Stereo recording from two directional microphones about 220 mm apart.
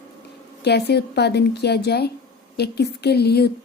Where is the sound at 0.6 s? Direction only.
50° left (ahead or behind).